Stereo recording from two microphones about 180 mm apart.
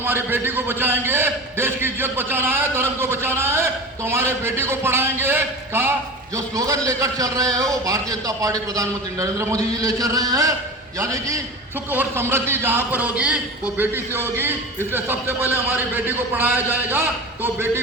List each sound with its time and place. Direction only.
0.0 s a man's voice: 10° right (ahead or behind)